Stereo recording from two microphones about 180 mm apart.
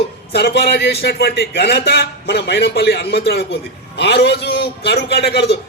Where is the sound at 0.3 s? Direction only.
65° left (ahead or behind).